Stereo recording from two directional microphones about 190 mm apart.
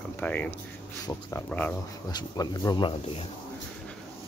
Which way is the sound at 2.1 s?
20° left (ahead or behind).